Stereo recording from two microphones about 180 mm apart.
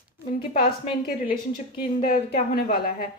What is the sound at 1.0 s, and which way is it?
A woman's voice, 50° left (ahead or behind).